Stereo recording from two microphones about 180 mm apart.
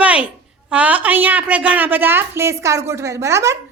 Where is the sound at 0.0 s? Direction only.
5° right (ahead or behind).